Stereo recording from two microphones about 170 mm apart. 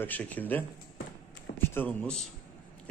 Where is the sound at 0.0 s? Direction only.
10° left (ahead or behind).